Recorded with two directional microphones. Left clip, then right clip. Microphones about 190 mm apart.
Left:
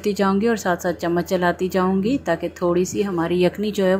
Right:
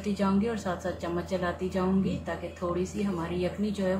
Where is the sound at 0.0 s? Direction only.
40° left (ahead or behind).